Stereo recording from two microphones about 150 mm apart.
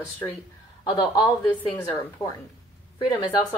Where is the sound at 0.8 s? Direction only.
30° left (ahead or behind).